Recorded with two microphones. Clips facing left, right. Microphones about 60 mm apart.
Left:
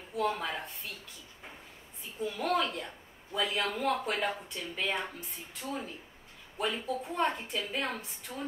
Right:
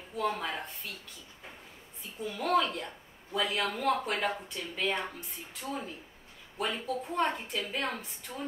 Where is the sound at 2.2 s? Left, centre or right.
Centre.